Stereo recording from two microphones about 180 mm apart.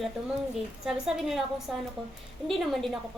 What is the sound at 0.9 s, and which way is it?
Speech, centre (ahead or behind).